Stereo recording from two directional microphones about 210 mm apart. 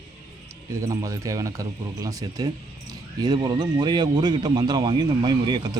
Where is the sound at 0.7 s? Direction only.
15° right (ahead or behind).